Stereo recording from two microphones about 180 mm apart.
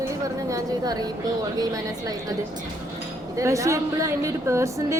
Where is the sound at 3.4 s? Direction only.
15° right (ahead or behind).